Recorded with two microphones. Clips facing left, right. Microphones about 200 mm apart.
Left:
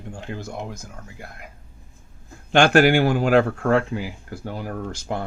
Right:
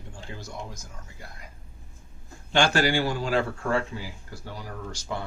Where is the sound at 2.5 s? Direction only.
55° left (ahead or behind).